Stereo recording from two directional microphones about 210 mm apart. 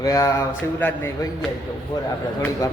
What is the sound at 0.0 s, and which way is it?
Speech, 15° left (ahead or behind).